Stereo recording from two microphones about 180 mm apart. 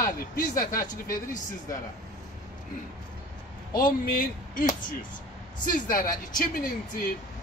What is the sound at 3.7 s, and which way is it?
Speech, 50° left (ahead or behind).